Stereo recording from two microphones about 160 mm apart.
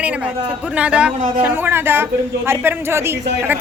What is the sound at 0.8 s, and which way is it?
A man's voice, 5° right (ahead or behind).